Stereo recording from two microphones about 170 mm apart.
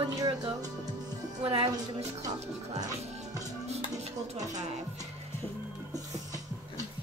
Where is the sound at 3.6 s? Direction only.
40° right (ahead or behind).